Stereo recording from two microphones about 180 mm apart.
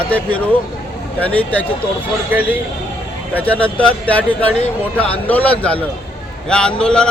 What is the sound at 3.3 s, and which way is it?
A man's voice, 10° left (ahead or behind).